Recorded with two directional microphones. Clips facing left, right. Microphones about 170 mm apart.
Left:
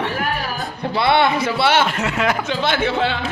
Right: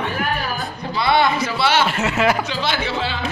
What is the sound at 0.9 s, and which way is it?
Speech, 60° left (ahead or behind).